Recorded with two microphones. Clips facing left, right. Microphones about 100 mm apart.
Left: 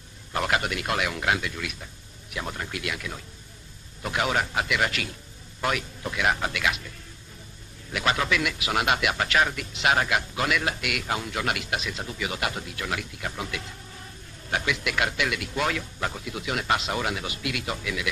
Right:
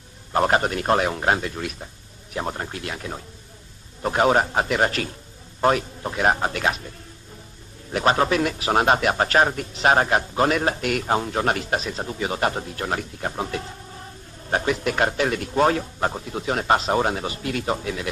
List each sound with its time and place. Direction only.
0.3 s a man's voice: 35° right (ahead or behind)
7.9 s a man's voice: 40° right (ahead or behind)